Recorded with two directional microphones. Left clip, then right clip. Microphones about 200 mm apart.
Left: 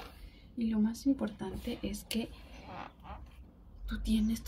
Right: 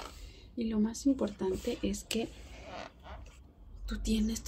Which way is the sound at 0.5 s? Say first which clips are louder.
Even; 30° right (ahead or behind).